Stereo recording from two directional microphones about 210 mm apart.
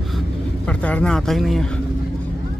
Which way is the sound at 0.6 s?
5° left (ahead or behind).